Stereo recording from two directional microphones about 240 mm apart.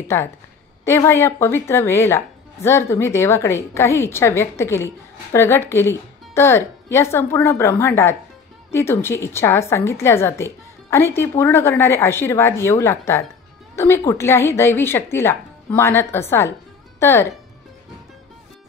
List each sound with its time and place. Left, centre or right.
0.1 s a woman's voice: centre